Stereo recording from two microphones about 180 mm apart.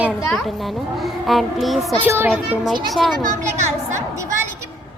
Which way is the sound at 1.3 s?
Centre (ahead or behind).